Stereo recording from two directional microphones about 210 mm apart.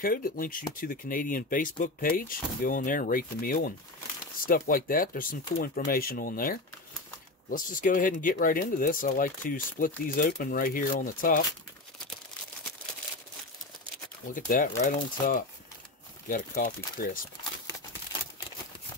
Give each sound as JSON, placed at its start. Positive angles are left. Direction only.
{"t": 0.0, "sound": "speech", "side_deg": 45}
{"t": 14.3, "sound": "speech", "side_deg": 40}